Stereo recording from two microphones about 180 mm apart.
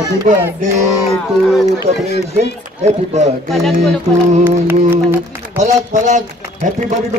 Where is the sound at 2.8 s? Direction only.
40° right (ahead or behind).